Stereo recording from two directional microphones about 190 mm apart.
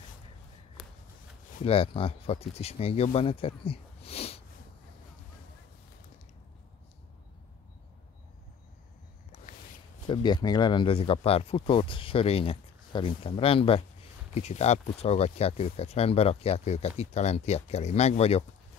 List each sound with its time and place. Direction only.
0.8 s shuffling cards: centre (ahead or behind)
1.6 s speech: 30° left (ahead or behind)
10.0 s speech: 25° left (ahead or behind)